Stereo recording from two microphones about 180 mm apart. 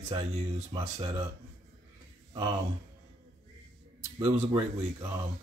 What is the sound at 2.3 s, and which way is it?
Speech, 20° right (ahead or behind).